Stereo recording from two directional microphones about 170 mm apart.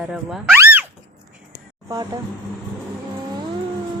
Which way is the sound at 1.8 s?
20° right (ahead or behind).